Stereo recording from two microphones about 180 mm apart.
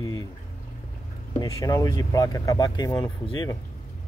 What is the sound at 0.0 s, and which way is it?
Pour, 20° left (ahead or behind).